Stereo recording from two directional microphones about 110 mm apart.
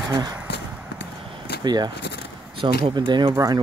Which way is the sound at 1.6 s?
40° right (ahead or behind).